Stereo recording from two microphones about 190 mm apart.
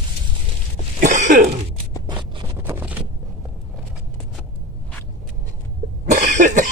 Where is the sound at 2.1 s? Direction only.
25° right (ahead or behind).